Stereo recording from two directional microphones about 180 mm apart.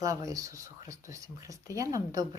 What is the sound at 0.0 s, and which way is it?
A woman's voice, 20° right (ahead or behind).